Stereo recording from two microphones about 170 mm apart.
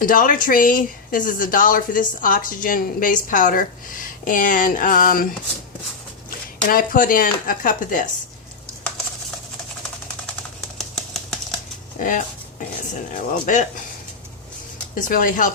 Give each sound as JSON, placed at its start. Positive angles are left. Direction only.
{"t": 0.0, "sound": "speech", "side_deg": 55}
{"t": 6.7, "sound": "speech", "side_deg": 55}
{"t": 10.8, "sound": "typewriter", "side_deg": 0}
{"t": 11.9, "sound": "speech", "side_deg": 50}
{"t": 14.9, "sound": "speech", "side_deg": 50}